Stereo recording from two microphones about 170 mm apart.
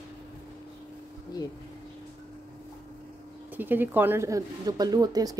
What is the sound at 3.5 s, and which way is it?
Speech, 10° right (ahead or behind).